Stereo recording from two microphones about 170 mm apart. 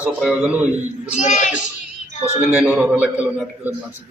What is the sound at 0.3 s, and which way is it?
Speech, 10° right (ahead or behind).